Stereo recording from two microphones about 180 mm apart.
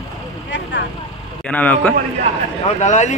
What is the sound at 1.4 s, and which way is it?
Speech, 10° left (ahead or behind).